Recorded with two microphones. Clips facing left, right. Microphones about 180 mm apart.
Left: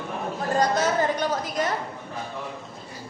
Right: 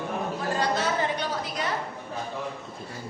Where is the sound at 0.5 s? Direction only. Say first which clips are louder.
Left 5 dB; 45° left (ahead or behind).